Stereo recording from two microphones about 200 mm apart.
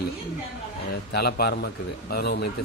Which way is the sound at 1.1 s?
55° left (ahead or behind).